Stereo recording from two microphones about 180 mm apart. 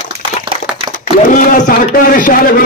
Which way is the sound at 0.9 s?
45° left (ahead or behind).